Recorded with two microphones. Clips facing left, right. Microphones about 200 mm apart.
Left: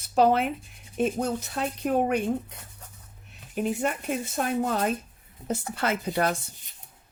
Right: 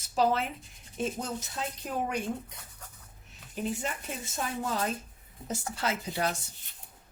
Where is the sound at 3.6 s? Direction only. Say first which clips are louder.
Left 6 dB; 60° left (ahead or behind).